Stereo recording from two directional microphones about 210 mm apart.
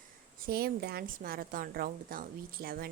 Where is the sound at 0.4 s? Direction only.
45° right (ahead or behind).